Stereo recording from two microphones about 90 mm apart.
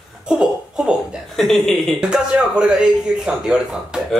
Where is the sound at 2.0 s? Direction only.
10° right (ahead or behind).